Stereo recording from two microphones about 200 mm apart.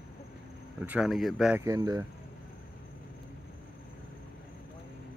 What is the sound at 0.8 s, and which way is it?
Speech, 5° right (ahead or behind).